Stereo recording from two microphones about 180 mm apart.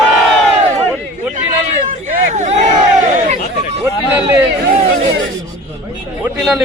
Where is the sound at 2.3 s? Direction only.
40° right (ahead or behind).